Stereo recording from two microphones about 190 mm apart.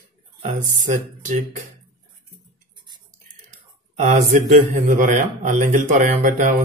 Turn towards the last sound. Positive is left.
turn(degrees=-45)  # may be behind; listen again after turning